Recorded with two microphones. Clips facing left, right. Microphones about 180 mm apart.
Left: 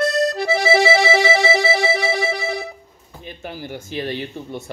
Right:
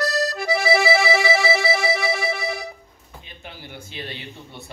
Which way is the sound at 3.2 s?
45° left (ahead or behind).